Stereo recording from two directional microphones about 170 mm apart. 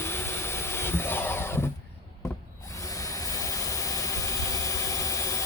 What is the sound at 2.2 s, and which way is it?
Tools, 20° left (ahead or behind).